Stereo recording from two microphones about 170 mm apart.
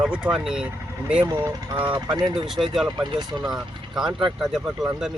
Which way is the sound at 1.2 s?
25° right (ahead or behind).